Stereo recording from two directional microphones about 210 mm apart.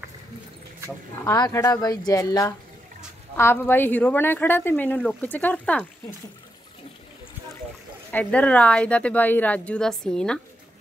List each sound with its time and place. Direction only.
1.1 s a woman's voice: 15° left (ahead or behind)
8.1 s speech: 5° left (ahead or behind)